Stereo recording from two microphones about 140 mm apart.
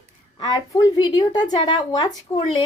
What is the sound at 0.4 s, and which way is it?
A woman's voice, 30° left (ahead or behind).